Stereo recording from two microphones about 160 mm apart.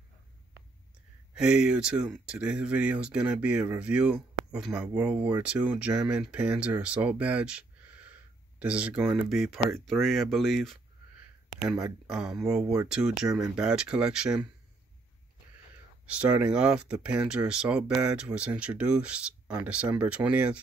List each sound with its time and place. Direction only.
1.3 s speech: 5° right (ahead or behind)
12.1 s speech: 5° right (ahead or behind)
16.1 s speech: 10° right (ahead or behind)